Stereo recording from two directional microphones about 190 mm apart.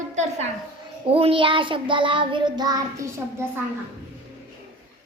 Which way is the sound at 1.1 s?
30° right (ahead or behind).